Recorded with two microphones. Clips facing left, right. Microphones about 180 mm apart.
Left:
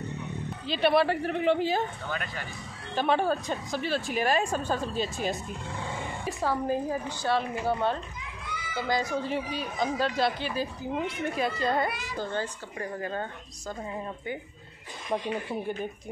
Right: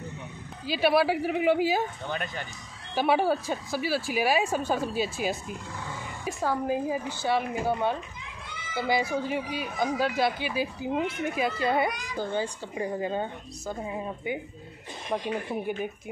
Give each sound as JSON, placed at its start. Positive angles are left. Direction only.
{"t": 0.7, "sound": "speech", "side_deg": -5}
{"t": 2.0, "sound": "speech", "side_deg": -20}
{"t": 2.9, "sound": "speech", "side_deg": -10}
{"t": 15.5, "sound": "speech", "side_deg": -10}